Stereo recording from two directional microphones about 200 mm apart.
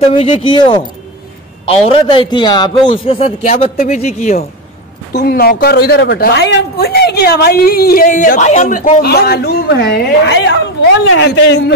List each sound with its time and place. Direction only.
0.2 s a man's voice: 25° left (ahead or behind)
5.1 s a woman's voice: 50° left (ahead or behind)